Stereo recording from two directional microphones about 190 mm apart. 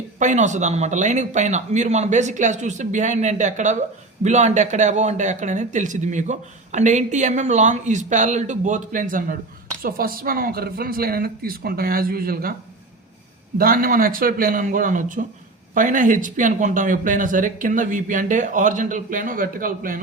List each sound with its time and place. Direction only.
0.2 s speech: 40° right (ahead or behind)
13.6 s speech: 50° right (ahead or behind)